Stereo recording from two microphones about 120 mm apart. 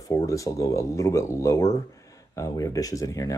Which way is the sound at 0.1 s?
30° left (ahead or behind).